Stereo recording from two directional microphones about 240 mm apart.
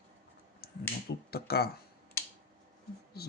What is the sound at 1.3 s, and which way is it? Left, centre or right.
Speech, left.